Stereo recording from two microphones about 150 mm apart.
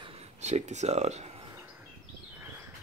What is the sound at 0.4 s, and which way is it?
Speech, 50° right (ahead or behind).